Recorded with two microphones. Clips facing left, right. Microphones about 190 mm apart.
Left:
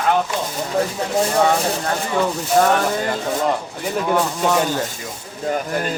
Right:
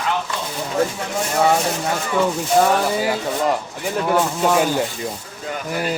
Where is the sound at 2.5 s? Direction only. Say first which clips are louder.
Left 1 dB; 5° right (ahead or behind).